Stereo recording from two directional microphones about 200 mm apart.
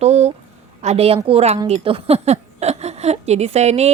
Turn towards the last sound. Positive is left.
turn(degrees=-35)  # may be behind; listen again after turning